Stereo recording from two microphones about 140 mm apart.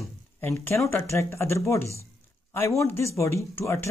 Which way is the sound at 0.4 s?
15° left (ahead or behind).